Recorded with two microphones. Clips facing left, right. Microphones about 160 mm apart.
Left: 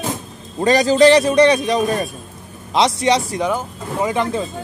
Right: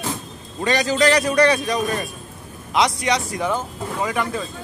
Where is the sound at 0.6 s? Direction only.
35° left (ahead or behind).